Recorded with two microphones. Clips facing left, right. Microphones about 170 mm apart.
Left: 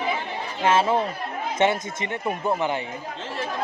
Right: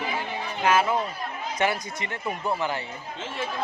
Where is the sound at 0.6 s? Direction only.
25° left (ahead or behind).